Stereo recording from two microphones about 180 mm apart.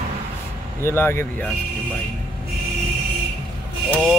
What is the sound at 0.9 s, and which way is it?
Speech, 15° left (ahead or behind).